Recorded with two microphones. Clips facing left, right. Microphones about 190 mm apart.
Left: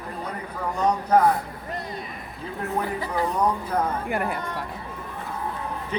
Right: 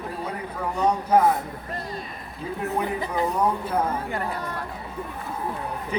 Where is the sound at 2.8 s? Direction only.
15° right (ahead or behind).